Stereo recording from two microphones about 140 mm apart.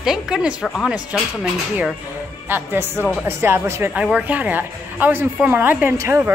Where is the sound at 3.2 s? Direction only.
15° right (ahead or behind).